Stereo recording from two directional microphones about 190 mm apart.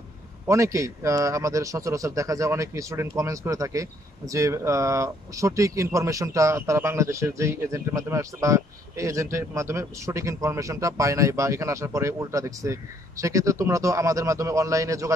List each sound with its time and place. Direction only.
0.5 s a man's voice: 15° right (ahead or behind)